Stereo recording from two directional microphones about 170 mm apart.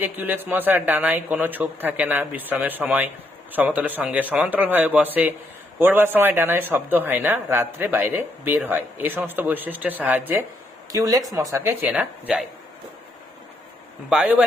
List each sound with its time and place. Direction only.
0.0 s speech: 10° right (ahead or behind)
14.1 s speech: 5° right (ahead or behind)